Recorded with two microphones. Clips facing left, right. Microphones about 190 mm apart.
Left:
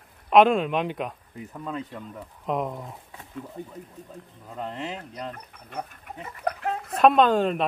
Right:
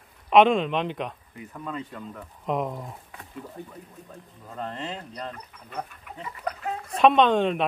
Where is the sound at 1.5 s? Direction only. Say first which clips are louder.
Left 1 dB; 15° left (ahead or behind).